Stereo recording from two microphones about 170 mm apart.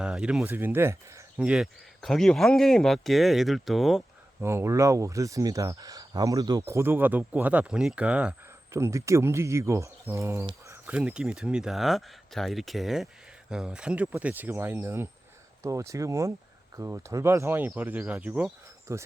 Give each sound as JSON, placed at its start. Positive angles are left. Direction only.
{"t": 0.0, "sound": "speech", "side_deg": -5}
{"t": 4.4, "sound": "speech", "side_deg": -15}
{"t": 18.9, "sound": "speech", "side_deg": -20}